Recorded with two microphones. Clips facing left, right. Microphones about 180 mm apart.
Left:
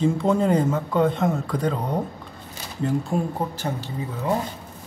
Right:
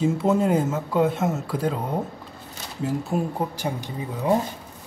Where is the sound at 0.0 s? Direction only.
5° right (ahead or behind).